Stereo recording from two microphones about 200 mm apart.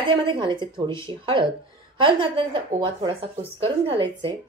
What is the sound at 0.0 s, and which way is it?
A woman's voice, 25° right (ahead or behind).